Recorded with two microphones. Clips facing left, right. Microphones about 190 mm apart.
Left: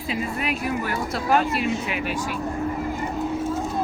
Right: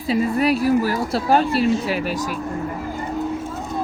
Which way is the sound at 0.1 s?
35° right (ahead or behind).